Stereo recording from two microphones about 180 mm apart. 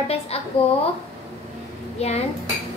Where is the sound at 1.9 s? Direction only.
35° left (ahead or behind).